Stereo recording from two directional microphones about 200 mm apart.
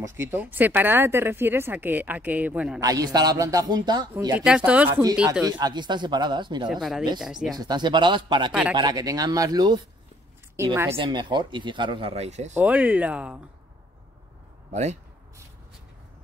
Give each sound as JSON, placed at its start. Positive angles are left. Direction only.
{"t": 0.2, "sound": "speech", "side_deg": -10}
{"t": 2.8, "sound": "speech", "side_deg": -15}
{"t": 4.5, "sound": "speech", "side_deg": -5}
{"t": 5.4, "sound": "speech", "side_deg": -20}
{"t": 6.7, "sound": "speech", "side_deg": 0}
{"t": 7.5, "sound": "a woman's voice", "side_deg": -20}
{"t": 11.0, "sound": "speech", "side_deg": -25}
{"t": 12.5, "sound": "speech", "side_deg": -5}
{"t": 14.7, "sound": "speech", "side_deg": -35}